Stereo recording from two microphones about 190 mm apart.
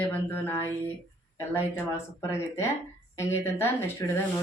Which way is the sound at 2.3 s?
15° left (ahead or behind).